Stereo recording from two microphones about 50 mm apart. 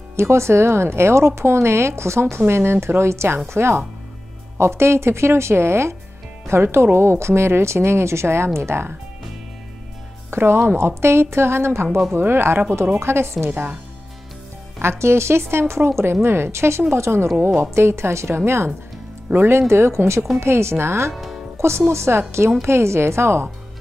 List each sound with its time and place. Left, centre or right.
0.1 s speech: right
2.4 s speech: right
10.3 s speech: right
12.1 s speech: right
13.5 s a woman's voice: right
14.8 s speech: right
19.3 s speech: right
19.7 s speech: right
21.1 s speech: centre
21.5 s speech: right